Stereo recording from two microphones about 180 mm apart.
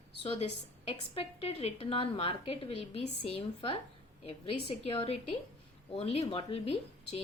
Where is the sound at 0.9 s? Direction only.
30° left (ahead or behind).